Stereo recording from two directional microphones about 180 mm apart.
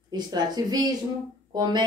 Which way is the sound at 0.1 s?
25° right (ahead or behind).